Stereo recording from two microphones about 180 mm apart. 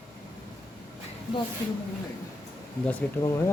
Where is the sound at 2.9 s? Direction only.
10° left (ahead or behind).